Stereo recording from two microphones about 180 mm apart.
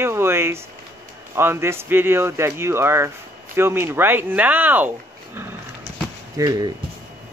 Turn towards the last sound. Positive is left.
turn(degrees=-20)  # may be behind; listen again after turning